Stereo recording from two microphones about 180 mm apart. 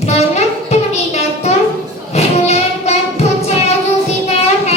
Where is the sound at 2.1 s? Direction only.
35° left (ahead or behind).